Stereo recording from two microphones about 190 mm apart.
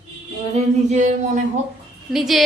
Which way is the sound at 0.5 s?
40° right (ahead or behind).